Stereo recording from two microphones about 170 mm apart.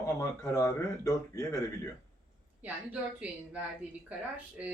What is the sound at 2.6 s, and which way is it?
A woman's voice, 10° right (ahead or behind).